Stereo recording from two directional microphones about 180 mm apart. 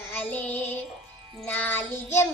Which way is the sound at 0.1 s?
10° left (ahead or behind).